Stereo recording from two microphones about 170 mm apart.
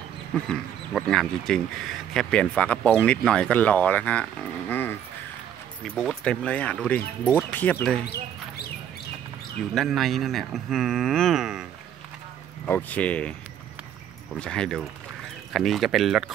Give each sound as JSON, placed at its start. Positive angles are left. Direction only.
{"t": 0.5, "sound": "speech", "side_deg": 0}
{"t": 8.0, "sound": "speech", "side_deg": 65}
{"t": 9.8, "sound": "speech", "side_deg": 0}
{"t": 12.6, "sound": "speech", "side_deg": 10}